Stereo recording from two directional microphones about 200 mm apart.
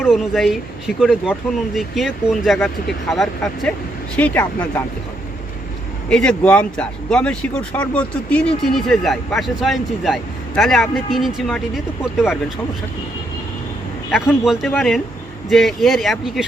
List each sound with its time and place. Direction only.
0.0 s speech: centre (ahead or behind)
6.1 s speech: 5° left (ahead or behind)
14.4 s speech: centre (ahead or behind)